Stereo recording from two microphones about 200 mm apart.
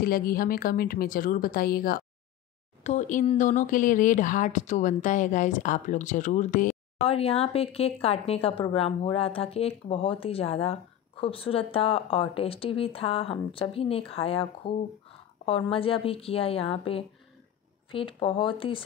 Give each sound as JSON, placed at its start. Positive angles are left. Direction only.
{"t": 0.0, "sound": "a woman's voice", "side_deg": 45}